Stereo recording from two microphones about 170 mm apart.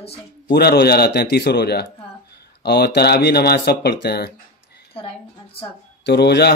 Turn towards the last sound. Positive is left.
turn(degrees=75)  # may be behind; listen again after turning